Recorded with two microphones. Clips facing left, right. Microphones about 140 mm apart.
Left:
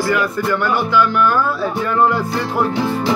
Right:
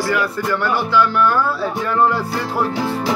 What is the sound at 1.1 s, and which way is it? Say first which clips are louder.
Speech: left 1 dB; 30° right (ahead or behind).